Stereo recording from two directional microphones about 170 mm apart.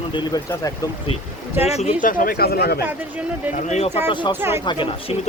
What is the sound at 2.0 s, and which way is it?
Speech, 55° left (ahead or behind).